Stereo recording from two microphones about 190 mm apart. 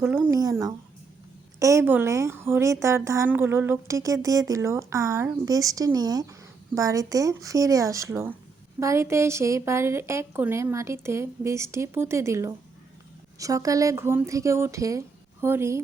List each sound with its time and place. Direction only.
0.0 s speech: 5° right (ahead or behind)
0.3 s speech: 20° right (ahead or behind)
1.5 s speech: 15° right (ahead or behind)